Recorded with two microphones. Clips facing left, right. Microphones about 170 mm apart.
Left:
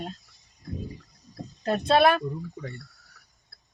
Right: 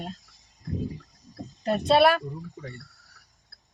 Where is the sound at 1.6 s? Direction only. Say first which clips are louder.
Right 1 dB; 10° right (ahead or behind).